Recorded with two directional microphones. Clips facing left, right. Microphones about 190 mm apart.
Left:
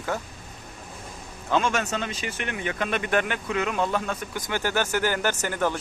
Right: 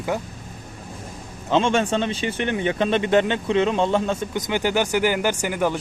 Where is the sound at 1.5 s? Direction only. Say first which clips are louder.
Right 5 dB; 25° right (ahead or behind).